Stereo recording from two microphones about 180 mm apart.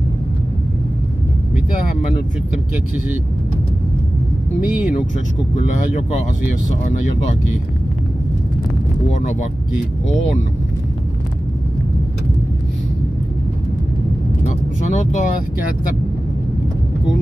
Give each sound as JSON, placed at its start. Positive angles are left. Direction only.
{"t": 14.4, "sound": "vehicle", "side_deg": 45}